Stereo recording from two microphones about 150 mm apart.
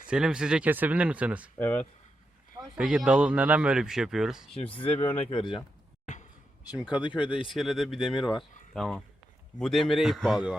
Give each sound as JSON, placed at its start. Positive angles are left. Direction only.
{"t": 0.1, "sound": "speech", "side_deg": -5}
{"t": 1.5, "sound": "speech", "side_deg": 10}
{"t": 2.7, "sound": "a man's voice", "side_deg": -5}
{"t": 4.5, "sound": "speech", "side_deg": 35}
{"t": 4.9, "sound": "speech", "side_deg": 15}
{"t": 7.1, "sound": "a man's voice", "side_deg": -10}